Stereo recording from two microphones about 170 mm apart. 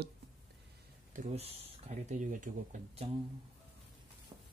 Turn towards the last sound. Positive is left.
turn(degrees=-50)  # may be behind; listen again after turning